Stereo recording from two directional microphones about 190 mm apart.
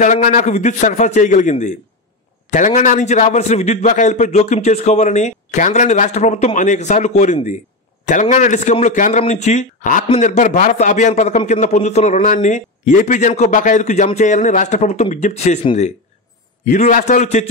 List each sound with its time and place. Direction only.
0.0 s a man's voice: 40° left (ahead or behind)